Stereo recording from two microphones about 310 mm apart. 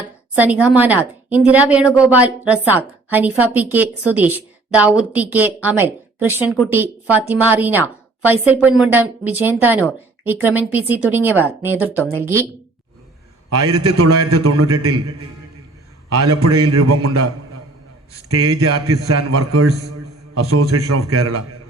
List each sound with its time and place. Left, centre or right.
0.3 s a woman's voice: centre
13.5 s a man's voice: right
16.0 s a man's voice: right
18.3 s speech: right